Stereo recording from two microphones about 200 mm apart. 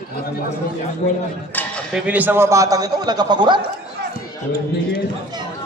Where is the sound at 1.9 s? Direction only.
5° right (ahead or behind).